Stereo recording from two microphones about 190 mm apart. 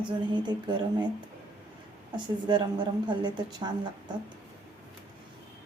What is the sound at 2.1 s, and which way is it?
A woman's voice, 25° right (ahead or behind).